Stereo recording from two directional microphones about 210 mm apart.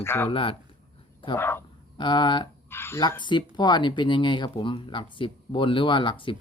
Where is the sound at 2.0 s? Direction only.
20° left (ahead or behind).